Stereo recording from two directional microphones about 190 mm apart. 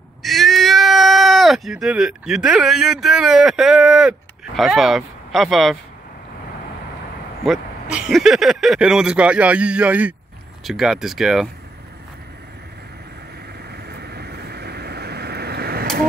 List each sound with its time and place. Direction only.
0.2 s speech: centre (ahead or behind)
7.9 s speech: 5° right (ahead or behind)
13.7 s vehicle: 55° right (ahead or behind)